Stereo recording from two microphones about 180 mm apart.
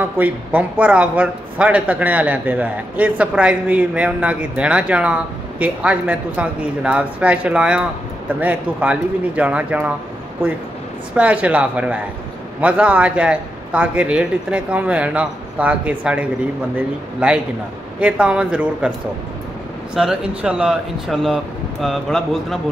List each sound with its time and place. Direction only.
0.2 s a man's voice: 10° right (ahead or behind)
20.0 s speech: 5° right (ahead or behind)